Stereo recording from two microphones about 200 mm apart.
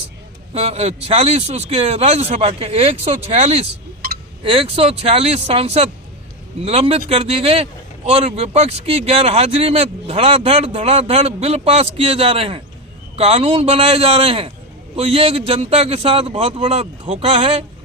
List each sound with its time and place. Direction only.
0.5 s speech: 30° right (ahead or behind)